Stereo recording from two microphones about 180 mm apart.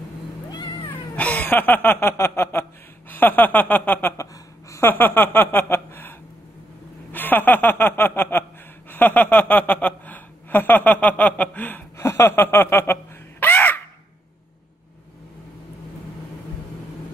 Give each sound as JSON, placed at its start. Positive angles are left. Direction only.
{"t": 0.5, "sound": "cat", "side_deg": 20}
{"t": 1.1, "sound": "a sound", "side_deg": 10}
{"t": 8.9, "sound": "chuckle", "side_deg": 10}